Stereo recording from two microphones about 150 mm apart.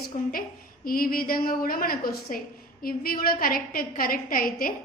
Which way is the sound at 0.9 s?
75° left (ahead or behind).